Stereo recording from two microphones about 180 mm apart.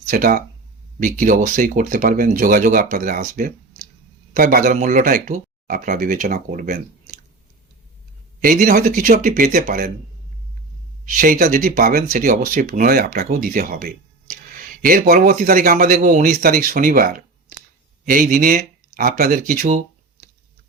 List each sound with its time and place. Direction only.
0.1 s speech: 50° right (ahead or behind)
8.4 s speech: 50° right (ahead or behind)
11.0 s speech: 50° right (ahead or behind)